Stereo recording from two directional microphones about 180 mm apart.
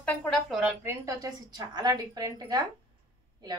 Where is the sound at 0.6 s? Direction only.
15° right (ahead or behind).